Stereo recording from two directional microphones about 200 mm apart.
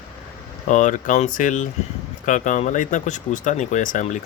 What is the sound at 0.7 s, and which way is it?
Speech, 40° left (ahead or behind).